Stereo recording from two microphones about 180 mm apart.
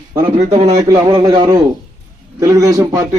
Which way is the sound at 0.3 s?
40° right (ahead or behind).